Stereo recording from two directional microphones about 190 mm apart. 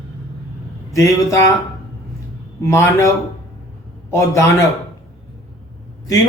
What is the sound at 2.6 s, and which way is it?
Speech, 15° left (ahead or behind).